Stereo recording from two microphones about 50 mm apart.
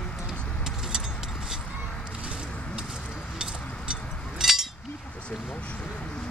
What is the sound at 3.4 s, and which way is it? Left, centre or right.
Chink, centre.